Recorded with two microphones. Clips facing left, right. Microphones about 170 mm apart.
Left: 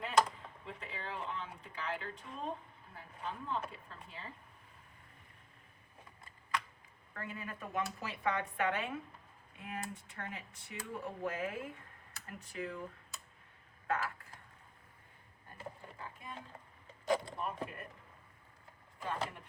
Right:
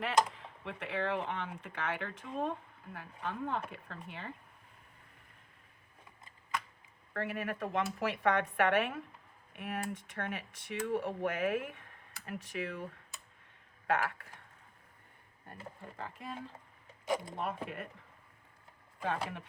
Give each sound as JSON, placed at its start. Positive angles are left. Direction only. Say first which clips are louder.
{"t": 0.6, "sound": "speech", "louder": "right 10 dB", "side_deg": -75}
{"t": 7.1, "sound": "speech", "louder": "right 8 dB", "side_deg": -75}
{"t": 13.8, "sound": "speech", "louder": "right 4 dB", "side_deg": -85}
{"t": 16.0, "sound": "speech", "louder": "right 5 dB", "side_deg": -75}
{"t": 17.3, "sound": "speech", "louder": "right 3 dB", "side_deg": -80}
{"t": 19.0, "sound": "speech", "louder": "right 3 dB", "side_deg": -70}